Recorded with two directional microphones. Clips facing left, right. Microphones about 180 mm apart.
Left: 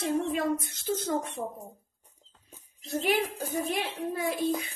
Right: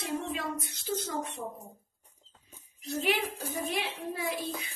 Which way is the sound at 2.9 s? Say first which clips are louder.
Left 3 dB; 45° left (ahead or behind).